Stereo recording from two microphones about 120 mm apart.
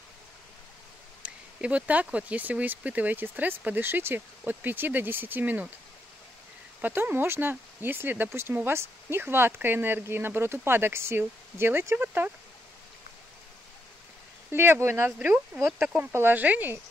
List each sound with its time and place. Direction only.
1.2 s speech: 10° right (ahead or behind)
6.8 s speech: 15° right (ahead or behind)
14.5 s speech: 20° right (ahead or behind)
15.1 s speech: 10° right (ahead or behind)